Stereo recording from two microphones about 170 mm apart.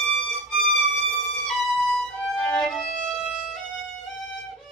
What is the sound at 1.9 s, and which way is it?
Violin, 5° left (ahead or behind).